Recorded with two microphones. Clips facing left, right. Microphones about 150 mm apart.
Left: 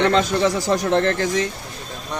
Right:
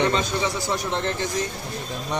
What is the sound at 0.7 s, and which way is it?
Speech, 90° left.